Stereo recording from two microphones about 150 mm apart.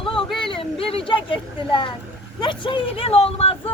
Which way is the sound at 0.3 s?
35° left (ahead or behind).